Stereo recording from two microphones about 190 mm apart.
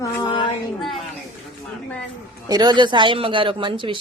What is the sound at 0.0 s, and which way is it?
Child singing, 20° left (ahead or behind).